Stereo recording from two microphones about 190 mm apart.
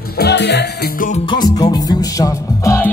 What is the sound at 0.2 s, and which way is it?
Speech, 65° left (ahead or behind).